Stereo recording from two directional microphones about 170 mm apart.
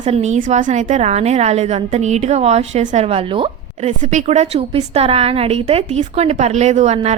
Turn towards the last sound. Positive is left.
turn(degrees=-40)  # may be behind; listen again after turning